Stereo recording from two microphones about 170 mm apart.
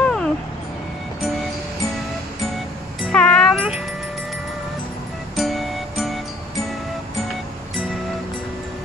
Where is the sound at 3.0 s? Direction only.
5° left (ahead or behind).